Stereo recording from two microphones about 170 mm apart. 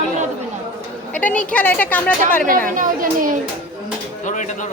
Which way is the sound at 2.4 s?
50° right (ahead or behind).